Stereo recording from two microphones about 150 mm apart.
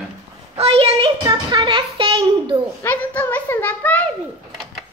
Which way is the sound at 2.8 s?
10° left (ahead or behind).